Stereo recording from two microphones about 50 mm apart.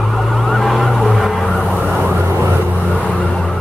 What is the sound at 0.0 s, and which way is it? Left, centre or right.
Emergency vehicle, centre.